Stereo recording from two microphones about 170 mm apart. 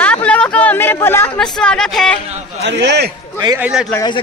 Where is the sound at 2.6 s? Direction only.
90° right.